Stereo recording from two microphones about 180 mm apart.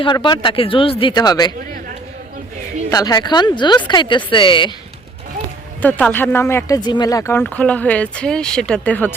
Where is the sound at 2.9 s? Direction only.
20° left (ahead or behind).